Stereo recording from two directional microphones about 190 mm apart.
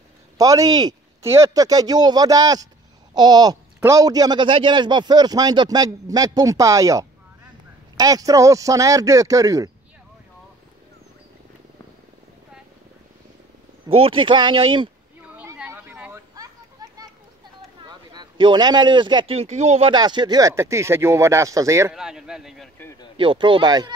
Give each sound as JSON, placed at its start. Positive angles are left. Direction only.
{"t": 0.4, "sound": "speech", "side_deg": -20}
{"t": 13.8, "sound": "speech", "side_deg": -30}
{"t": 15.3, "sound": "a sound", "side_deg": -10}
{"t": 17.8, "sound": "speech", "side_deg": -20}
{"t": 19.9, "sound": "speech", "side_deg": -25}
{"t": 21.9, "sound": "speech", "side_deg": -5}
{"t": 22.8, "sound": "speech", "side_deg": 15}
{"t": 23.1, "sound": "speech", "side_deg": -25}